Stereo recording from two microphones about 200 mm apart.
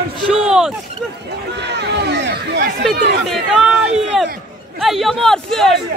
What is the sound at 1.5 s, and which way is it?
Speech, 60° right (ahead or behind).